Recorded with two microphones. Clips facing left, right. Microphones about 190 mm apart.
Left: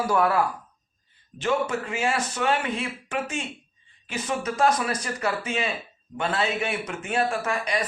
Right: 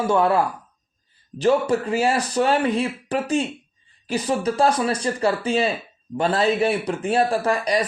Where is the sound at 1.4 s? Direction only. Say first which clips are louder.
Right 7 dB; 35° right (ahead or behind).